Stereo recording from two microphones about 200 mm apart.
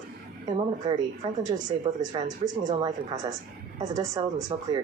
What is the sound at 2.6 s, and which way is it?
Speech, 20° right (ahead or behind).